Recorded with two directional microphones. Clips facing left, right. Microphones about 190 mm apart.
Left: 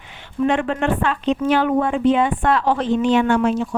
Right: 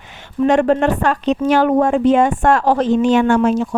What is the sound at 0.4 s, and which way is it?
A woman's voice, 40° right (ahead or behind).